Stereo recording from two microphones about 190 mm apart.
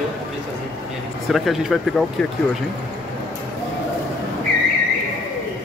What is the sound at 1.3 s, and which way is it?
Speech, centre (ahead or behind).